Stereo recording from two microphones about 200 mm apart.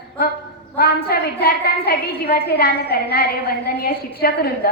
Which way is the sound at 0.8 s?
50° left (ahead or behind).